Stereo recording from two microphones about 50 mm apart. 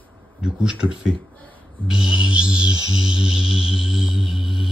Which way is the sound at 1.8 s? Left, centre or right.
Centre.